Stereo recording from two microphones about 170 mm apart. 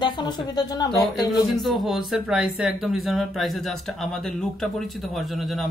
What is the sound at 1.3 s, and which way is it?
Speech, centre (ahead or behind).